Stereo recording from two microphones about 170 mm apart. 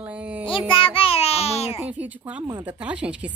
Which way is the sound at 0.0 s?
5° right (ahead or behind).